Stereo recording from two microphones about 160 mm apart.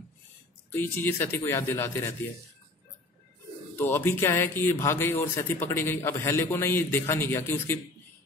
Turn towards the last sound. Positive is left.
turn(degrees=15)  # may be behind; listen again after turning